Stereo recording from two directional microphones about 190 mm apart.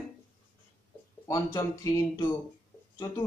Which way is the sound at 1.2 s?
20° left (ahead or behind).